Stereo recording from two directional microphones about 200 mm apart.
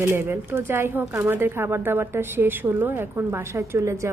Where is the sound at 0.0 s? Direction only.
10° right (ahead or behind).